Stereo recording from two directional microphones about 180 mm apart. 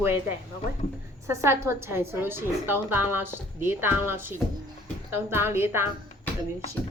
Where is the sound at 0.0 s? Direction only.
10° right (ahead or behind).